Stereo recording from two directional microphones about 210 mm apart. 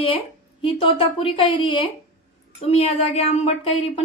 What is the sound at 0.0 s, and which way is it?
A woman's voice, 25° left (ahead or behind).